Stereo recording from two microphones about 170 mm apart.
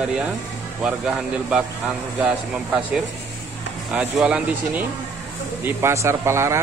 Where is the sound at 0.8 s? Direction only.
5° right (ahead or behind).